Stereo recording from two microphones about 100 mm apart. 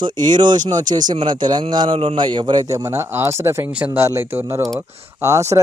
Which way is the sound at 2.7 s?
30° right (ahead or behind).